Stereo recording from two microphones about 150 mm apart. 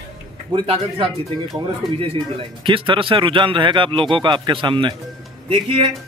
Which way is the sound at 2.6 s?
35° right (ahead or behind).